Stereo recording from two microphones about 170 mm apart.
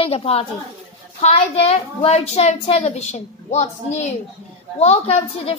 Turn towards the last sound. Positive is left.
turn(degrees=40)  # may be behind; listen again after turning